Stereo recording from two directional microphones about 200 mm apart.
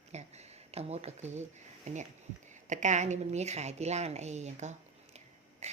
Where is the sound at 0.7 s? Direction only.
30° right (ahead or behind).